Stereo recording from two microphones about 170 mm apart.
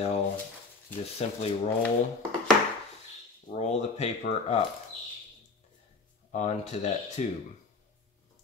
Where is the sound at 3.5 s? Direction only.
40° left (ahead or behind).